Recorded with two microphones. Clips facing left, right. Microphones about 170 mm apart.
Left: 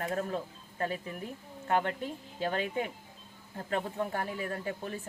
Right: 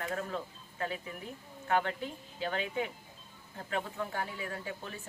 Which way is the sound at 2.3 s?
45° left (ahead or behind).